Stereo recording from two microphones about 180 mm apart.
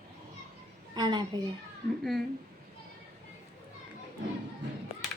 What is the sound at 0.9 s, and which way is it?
Speech, 25° right (ahead or behind).